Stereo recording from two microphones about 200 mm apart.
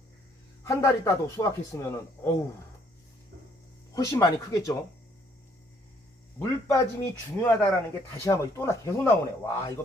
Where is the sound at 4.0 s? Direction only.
20° left (ahead or behind).